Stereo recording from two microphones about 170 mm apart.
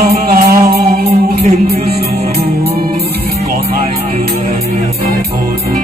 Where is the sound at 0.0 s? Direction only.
60° right (ahead or behind).